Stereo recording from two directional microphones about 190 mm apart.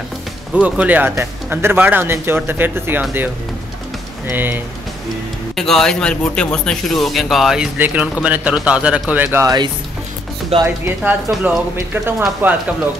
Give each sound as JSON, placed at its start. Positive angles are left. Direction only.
{"t": 0.6, "sound": "speech", "side_deg": -5}
{"t": 4.3, "sound": "speech", "side_deg": -10}
{"t": 5.6, "sound": "speech", "side_deg": 0}
{"t": 10.5, "sound": "speech", "side_deg": -30}
{"t": 11.2, "sound": "speech", "side_deg": -10}